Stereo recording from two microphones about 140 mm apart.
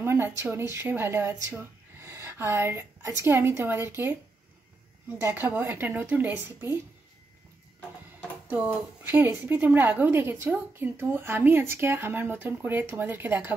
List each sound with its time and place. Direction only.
0.0 s a sound: 15° right (ahead or behind)
0.4 s speech: 15° right (ahead or behind)
5.2 s a woman's voice: 15° right (ahead or behind)
8.5 s a woman's voice: 15° right (ahead or behind)